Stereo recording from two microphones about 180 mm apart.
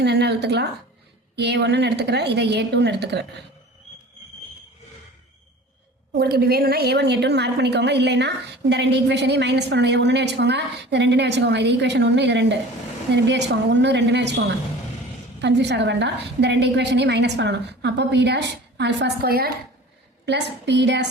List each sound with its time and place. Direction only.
0.0 s a woman's voice: 70° right (ahead or behind)
6.1 s a woman's voice: 60° right (ahead or behind)
20.2 s a woman's voice: 75° right (ahead or behind)